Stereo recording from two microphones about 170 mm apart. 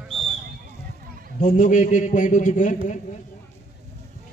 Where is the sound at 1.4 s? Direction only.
45° left (ahead or behind).